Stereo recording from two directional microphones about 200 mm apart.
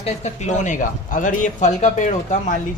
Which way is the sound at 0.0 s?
35° left (ahead or behind).